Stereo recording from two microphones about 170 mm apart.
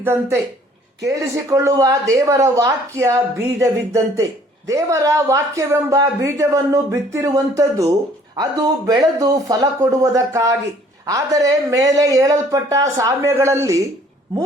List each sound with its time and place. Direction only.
0.0 s a woman's voice: 15° right (ahead or behind)